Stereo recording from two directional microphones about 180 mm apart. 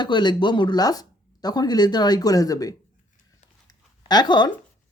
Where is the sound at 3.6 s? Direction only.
25° left (ahead or behind).